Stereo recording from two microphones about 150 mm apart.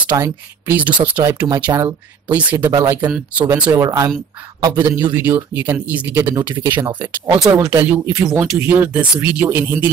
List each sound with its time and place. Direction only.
0.2 s speech: 10° right (ahead or behind)
0.9 s speech: 35° right (ahead or behind)
2.2 s speech: 15° right (ahead or behind)
5.1 s speech: 15° right (ahead or behind)
7.2 s speech: 5° right (ahead or behind)
7.5 s speech: 20° right (ahead or behind)